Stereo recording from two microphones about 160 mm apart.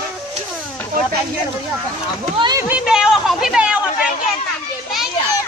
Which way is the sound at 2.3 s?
30° right (ahead or behind).